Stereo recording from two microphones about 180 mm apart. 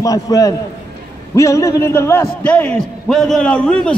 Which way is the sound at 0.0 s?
20° left (ahead or behind).